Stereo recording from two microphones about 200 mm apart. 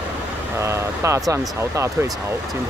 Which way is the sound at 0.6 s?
15° right (ahead or behind).